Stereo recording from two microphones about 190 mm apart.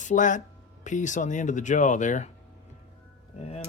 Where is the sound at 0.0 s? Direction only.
40° left (ahead or behind).